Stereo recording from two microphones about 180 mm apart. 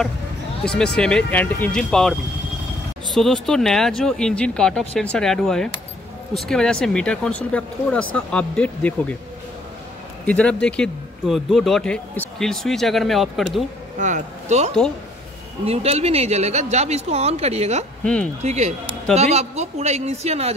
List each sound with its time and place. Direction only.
0.7 s speech: 5° left (ahead or behind)
10.2 s speech: 5° left (ahead or behind)
13.9 s speech: 45° right (ahead or behind)
18.0 s speech: 5° left (ahead or behind)
18.4 s speech: 40° right (ahead or behind)